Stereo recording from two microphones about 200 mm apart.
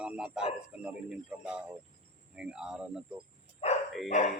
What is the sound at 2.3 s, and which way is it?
Speech, 5° right (ahead or behind).